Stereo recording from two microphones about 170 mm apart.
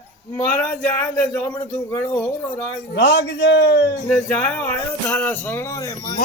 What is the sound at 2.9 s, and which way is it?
Speech, 80° left.